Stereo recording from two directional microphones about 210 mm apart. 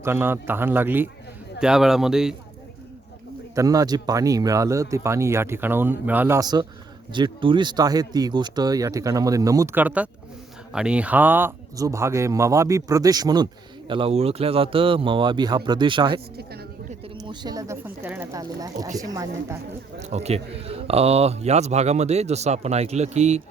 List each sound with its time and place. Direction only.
0.0 s speech: 10° right (ahead or behind)
3.5 s speech: 15° right (ahead or behind)
20.0 s a man's voice: 30° right (ahead or behind)